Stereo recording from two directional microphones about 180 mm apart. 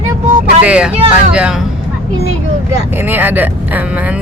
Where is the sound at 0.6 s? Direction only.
5° right (ahead or behind).